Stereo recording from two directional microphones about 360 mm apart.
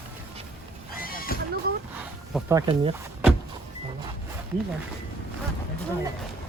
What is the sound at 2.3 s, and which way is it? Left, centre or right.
Speech, centre.